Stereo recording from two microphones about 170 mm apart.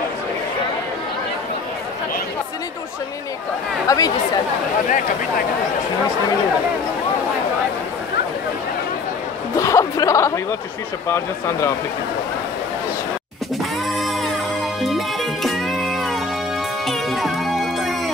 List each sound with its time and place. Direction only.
3.8 s speech: 20° left (ahead or behind)
9.6 s speech: 20° left (ahead or behind)
13.9 s music: centre (ahead or behind)